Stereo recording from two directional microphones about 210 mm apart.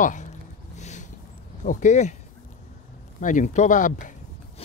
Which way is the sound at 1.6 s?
35° left (ahead or behind).